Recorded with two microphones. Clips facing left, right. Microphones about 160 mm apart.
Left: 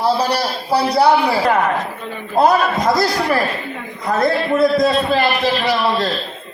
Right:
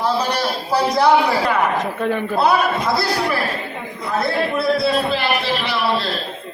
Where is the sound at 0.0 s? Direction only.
35° left (ahead or behind).